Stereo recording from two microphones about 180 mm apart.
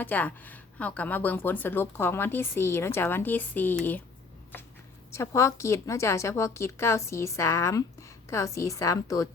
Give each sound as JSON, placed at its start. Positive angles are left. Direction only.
{"t": 0.0, "sound": "a woman's voice", "side_deg": 10}
{"t": 5.1, "sound": "a woman's voice", "side_deg": 15}